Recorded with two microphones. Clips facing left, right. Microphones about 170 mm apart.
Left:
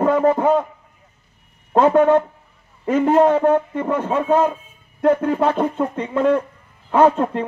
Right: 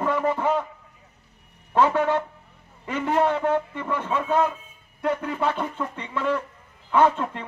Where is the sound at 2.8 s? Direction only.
40° left (ahead or behind).